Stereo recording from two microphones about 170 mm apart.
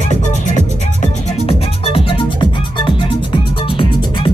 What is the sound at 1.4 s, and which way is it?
Music, 35° left (ahead or behind).